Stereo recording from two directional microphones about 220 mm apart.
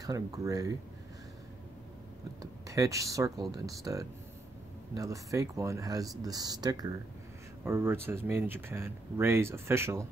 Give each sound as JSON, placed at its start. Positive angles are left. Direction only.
{"t": 0.0, "sound": "speech", "side_deg": -15}
{"t": 2.7, "sound": "speech", "side_deg": -15}